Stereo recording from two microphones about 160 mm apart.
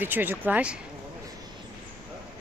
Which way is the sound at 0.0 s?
10° right (ahead or behind).